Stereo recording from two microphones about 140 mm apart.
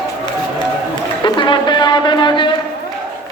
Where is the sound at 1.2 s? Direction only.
35° left (ahead or behind).